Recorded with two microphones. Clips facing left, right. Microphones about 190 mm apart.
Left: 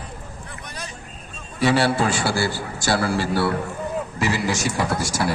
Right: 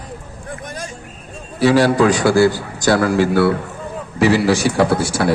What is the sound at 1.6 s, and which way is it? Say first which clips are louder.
Speech: right 6 dB; 40° right (ahead or behind).